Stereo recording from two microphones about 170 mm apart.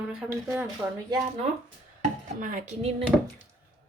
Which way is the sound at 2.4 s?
50° right (ahead or behind).